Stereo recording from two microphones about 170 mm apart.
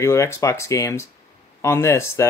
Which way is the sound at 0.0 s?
15° left (ahead or behind).